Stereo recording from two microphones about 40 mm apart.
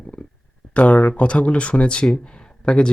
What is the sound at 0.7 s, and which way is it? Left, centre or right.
Speech, left.